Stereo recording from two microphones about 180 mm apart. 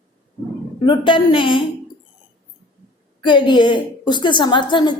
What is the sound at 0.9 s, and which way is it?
Speech, 25° left (ahead or behind).